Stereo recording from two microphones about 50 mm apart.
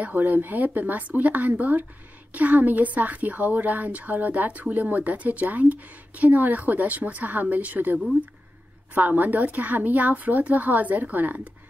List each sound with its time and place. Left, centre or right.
0.0 s a woman's voice: right